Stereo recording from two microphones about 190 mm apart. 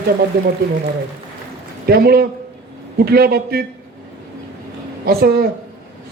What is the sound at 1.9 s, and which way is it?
A man's voice, 55° right (ahead or behind).